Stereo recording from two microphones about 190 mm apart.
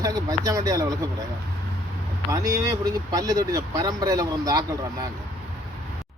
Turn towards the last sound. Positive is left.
turn(degrees=-20)  # may be behind; listen again after turning